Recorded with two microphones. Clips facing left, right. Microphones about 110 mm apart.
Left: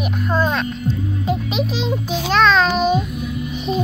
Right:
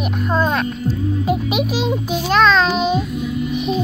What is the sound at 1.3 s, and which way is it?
Speech, 10° right (ahead or behind).